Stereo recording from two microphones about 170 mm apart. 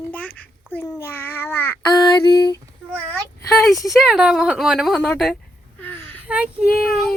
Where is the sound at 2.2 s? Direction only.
25° left (ahead or behind).